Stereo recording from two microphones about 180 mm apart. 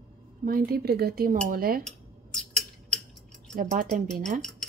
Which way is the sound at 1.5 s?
55° right (ahead or behind).